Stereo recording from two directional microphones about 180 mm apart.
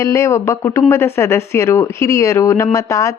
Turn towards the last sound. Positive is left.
turn(degrees=15)  # may be behind; listen again after turning